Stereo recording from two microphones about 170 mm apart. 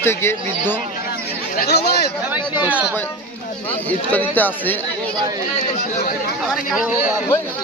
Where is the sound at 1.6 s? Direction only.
70° left (ahead or behind).